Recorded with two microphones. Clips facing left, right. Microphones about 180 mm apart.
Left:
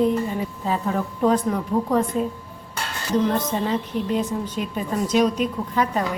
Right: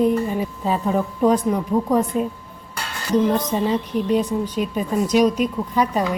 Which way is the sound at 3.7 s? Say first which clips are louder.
Right 4 dB; 15° right (ahead or behind).